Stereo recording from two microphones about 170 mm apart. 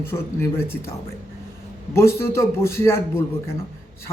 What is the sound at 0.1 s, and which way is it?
Speech, 15° left (ahead or behind).